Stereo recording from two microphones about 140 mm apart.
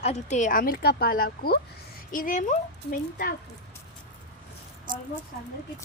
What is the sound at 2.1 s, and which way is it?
Speech, 70° left (ahead or behind).